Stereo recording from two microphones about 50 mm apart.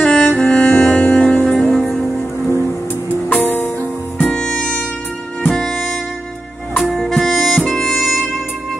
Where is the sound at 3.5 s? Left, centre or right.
Left.